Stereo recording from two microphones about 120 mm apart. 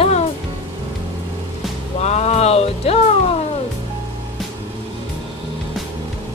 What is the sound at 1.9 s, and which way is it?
Music, 65° left (ahead or behind).